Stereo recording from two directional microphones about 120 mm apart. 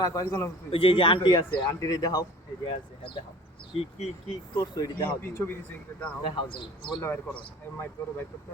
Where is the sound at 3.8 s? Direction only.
65° left (ahead or behind).